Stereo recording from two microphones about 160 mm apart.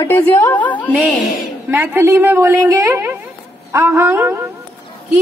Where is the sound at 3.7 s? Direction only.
15° right (ahead or behind).